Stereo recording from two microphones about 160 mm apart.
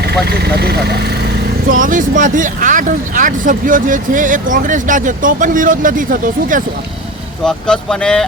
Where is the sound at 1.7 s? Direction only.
55° right (ahead or behind).